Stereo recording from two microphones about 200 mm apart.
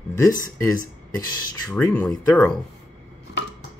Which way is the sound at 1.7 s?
10° left (ahead or behind).